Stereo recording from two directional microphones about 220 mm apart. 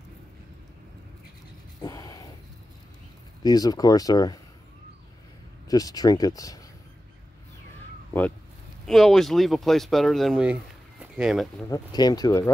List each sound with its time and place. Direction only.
1.8 s a sound: 15° left (ahead or behind)
3.4 s speech: 15° left (ahead or behind)
5.7 s speech: 15° left (ahead or behind)
8.8 s speech: centre (ahead or behind)
11.7 s speech: 20° left (ahead or behind)